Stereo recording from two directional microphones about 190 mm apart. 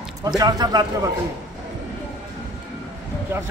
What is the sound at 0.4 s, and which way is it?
Speech, 20° right (ahead or behind).